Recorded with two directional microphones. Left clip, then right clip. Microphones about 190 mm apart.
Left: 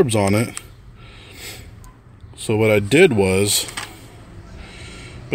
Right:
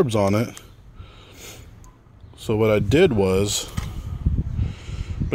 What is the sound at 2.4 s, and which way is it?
Speech, 5° right (ahead or behind).